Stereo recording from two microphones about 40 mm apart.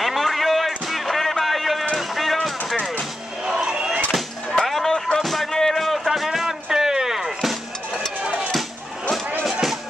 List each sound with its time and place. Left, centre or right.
0.0 s music: centre
3.4 s a sound: centre
4.1 s a sound: centre
4.9 s music: centre
6.0 s music: centre
9.5 s music: centre